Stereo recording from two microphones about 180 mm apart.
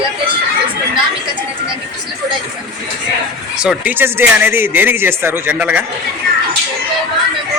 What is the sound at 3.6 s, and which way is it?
Speech, 5° right (ahead or behind).